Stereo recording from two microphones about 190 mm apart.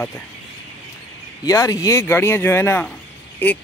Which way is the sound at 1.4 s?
20° left (ahead or behind).